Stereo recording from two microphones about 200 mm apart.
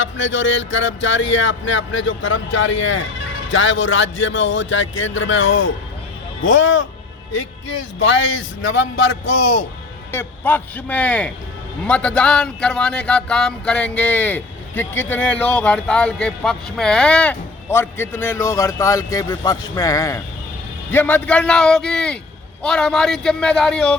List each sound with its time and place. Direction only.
0.0 s speech: 70° left (ahead or behind)
7.9 s a man's voice: 65° left (ahead or behind)
10.1 s a man's voice: 10° left (ahead or behind)